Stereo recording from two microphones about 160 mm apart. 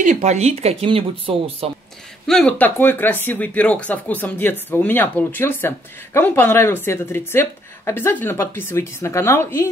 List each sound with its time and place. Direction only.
0.0 s speech: 50° right (ahead or behind)
2.2 s speech: 5° left (ahead or behind)